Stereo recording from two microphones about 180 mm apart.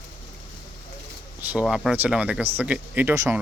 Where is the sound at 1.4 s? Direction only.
5° right (ahead or behind).